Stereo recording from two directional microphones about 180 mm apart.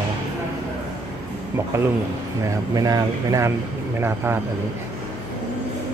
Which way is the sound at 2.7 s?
20° right (ahead or behind).